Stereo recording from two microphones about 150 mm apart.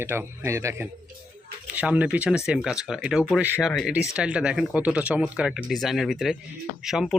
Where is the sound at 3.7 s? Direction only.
Centre (ahead or behind).